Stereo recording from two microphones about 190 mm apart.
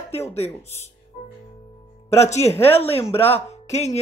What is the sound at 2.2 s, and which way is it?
Speech, 35° left (ahead or behind).